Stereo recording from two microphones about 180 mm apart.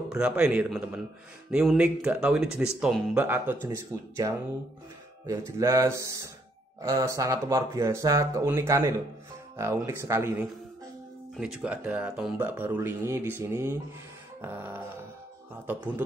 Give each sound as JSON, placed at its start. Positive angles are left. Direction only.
{"t": 0.1, "sound": "speech", "side_deg": -5}
{"t": 11.3, "sound": "speech", "side_deg": -5}